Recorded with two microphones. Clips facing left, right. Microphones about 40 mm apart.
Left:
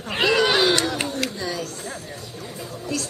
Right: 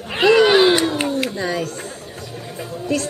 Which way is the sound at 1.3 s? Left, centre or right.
Right.